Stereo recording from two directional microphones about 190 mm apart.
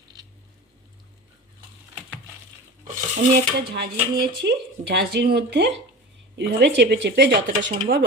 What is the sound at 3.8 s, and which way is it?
Speech, 55° right (ahead or behind).